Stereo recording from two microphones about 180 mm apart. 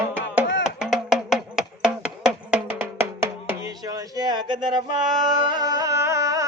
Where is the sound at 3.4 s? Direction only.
20° right (ahead or behind).